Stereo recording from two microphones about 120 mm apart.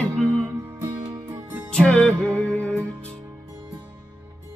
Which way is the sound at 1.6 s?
10° left (ahead or behind).